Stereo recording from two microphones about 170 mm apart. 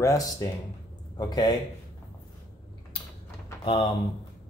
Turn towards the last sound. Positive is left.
turn(degrees=30)  # may be behind; listen again after turning